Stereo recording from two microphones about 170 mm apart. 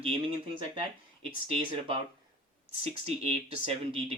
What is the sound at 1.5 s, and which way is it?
Speech, 35° right (ahead or behind).